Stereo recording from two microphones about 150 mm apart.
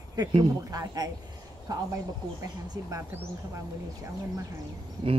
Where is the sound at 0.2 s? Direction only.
25° right (ahead or behind).